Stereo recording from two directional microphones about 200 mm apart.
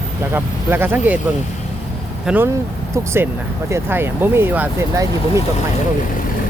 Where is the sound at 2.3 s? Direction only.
10° right (ahead or behind).